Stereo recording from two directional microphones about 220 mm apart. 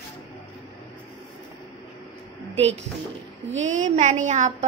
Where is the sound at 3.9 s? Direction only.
30° right (ahead or behind).